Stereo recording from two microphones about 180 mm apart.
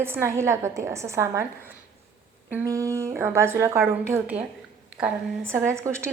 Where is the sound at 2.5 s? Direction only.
15° right (ahead or behind).